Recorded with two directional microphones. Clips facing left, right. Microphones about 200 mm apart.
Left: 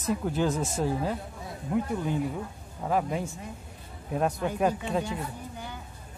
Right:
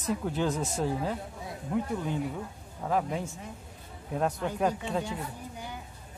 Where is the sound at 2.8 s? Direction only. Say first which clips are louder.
Left 2 dB; 10° left (ahead or behind).